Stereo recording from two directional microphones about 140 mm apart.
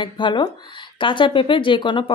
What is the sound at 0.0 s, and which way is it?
A woman's voice, 35° left (ahead or behind).